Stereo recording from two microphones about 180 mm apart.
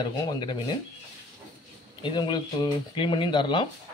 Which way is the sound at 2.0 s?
25° left (ahead or behind).